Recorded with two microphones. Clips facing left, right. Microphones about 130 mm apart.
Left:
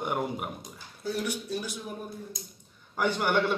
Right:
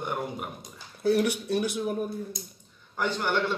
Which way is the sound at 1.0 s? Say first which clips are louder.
Right 8 dB; 65° right (ahead or behind).